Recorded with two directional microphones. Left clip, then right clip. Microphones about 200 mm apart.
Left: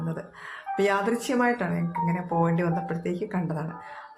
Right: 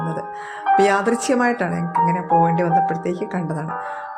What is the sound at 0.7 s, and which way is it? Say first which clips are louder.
Speech: right 6 dB; 25° right (ahead or behind).